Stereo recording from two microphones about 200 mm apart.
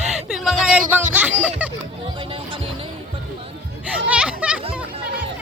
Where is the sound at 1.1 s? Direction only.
5° right (ahead or behind).